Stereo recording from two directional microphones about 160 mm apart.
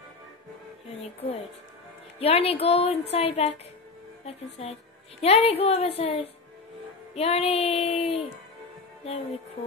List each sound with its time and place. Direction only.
1.0 s speech: 40° left (ahead or behind)